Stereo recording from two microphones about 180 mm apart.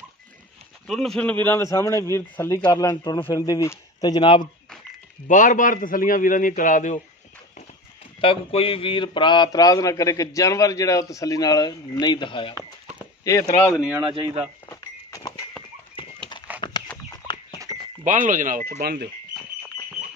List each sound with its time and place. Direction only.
0.8 s a man's voice: centre (ahead or behind); by 4.5 s 25° left (ahead or behind)
5.3 s a man's voice: 45° left (ahead or behind)
8.2 s a man's voice: 30° left (ahead or behind)
13.0 s chop: 15° left (ahead or behind)
13.7 s speech: 10° right (ahead or behind)
14.0 s speech: 30° right (ahead or behind)
14.7 s a sound: 20° left (ahead or behind)
16.6 s chicken: 25° left (ahead or behind)
18.0 s speech: 45° right (ahead or behind)